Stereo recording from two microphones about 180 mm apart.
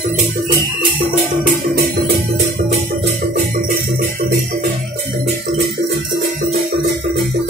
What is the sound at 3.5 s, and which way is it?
Jingle bell, 55° right (ahead or behind).